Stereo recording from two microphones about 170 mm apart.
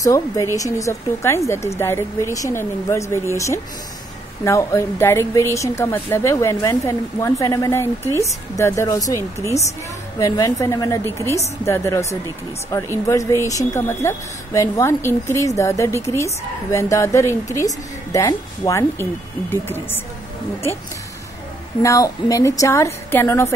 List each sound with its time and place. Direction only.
0.0 s a woman's voice: 20° left (ahead or behind)
21.8 s a woman's voice: 20° left (ahead or behind)